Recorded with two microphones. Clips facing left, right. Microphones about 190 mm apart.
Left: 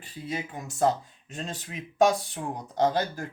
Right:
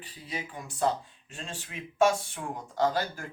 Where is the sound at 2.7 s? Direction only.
20° left (ahead or behind).